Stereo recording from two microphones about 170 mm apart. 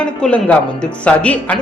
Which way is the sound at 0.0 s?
5° left (ahead or behind).